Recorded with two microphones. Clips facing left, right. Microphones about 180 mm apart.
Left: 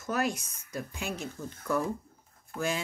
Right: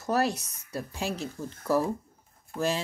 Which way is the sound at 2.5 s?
35° right (ahead or behind).